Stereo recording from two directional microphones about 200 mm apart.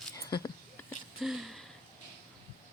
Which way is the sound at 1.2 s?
Centre (ahead or behind).